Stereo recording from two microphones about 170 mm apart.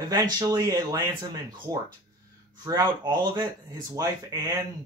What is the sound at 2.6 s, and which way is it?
Speech, 25° right (ahead or behind).